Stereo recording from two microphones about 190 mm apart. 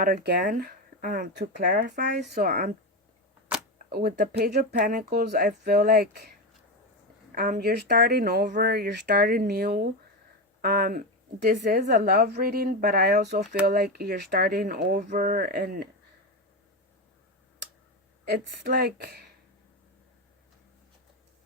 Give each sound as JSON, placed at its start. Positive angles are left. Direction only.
{"t": 0.0, "sound": "a woman's voice", "side_deg": -50}
{"t": 3.8, "sound": "speech", "side_deg": -55}
{"t": 7.3, "sound": "a woman's voice", "side_deg": -50}
{"t": 18.3, "sound": "speech", "side_deg": -55}